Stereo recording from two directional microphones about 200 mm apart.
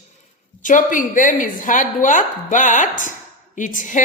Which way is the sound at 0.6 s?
40° left (ahead or behind).